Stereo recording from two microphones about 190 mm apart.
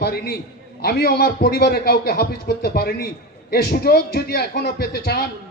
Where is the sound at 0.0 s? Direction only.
55° left (ahead or behind).